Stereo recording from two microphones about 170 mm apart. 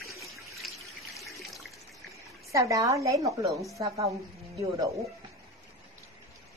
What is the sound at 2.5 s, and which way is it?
Speech, 20° right (ahead or behind).